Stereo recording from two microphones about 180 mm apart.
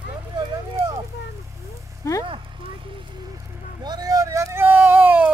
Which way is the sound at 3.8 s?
20° right (ahead or behind).